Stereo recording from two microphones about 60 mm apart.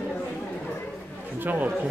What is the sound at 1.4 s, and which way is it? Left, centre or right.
Speech, right.